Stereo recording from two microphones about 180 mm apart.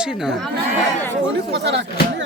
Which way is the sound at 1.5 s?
70° right (ahead or behind).